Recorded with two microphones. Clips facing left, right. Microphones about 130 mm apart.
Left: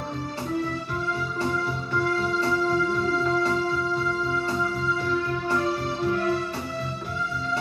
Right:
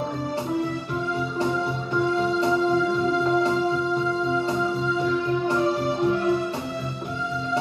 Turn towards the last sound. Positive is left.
turn(degrees=-20)  # may be behind; listen again after turning